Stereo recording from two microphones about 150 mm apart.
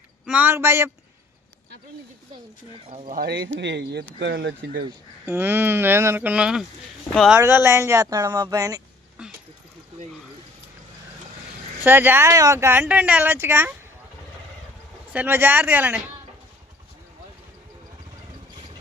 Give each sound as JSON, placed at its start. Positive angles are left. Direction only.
{"t": 0.3, "sound": "speech", "side_deg": -10}
{"t": 3.1, "sound": "speech", "side_deg": -85}
{"t": 5.2, "sound": "speech", "side_deg": -15}
{"t": 7.3, "sound": "speech", "side_deg": -15}
{"t": 9.2, "sound": "a sound", "side_deg": -10}
{"t": 11.9, "sound": "speech", "side_deg": -15}
{"t": 15.1, "sound": "speech", "side_deg": -10}